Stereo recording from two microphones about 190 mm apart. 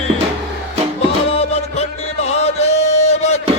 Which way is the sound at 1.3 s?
35° left (ahead or behind).